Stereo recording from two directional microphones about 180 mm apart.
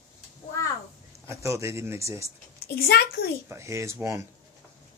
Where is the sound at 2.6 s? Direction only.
60° left (ahead or behind).